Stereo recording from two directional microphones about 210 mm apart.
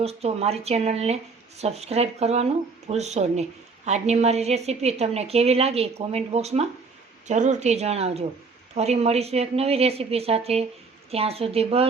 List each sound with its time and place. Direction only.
0.0 s a woman's voice: 30° right (ahead or behind)